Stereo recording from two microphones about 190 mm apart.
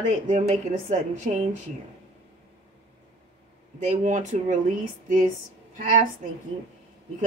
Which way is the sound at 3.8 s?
40° right (ahead or behind).